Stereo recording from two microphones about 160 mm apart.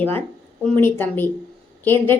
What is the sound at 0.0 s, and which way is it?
A woman's voice, 10° left (ahead or behind).